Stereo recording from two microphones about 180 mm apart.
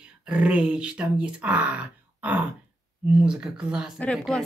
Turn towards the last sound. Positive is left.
turn(degrees=5)  # may be behind; listen again after turning